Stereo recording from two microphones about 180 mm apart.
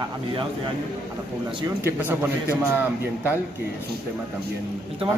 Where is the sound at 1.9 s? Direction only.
10° right (ahead or behind).